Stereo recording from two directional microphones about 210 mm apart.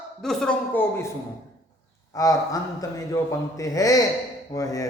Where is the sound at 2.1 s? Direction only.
15° left (ahead or behind).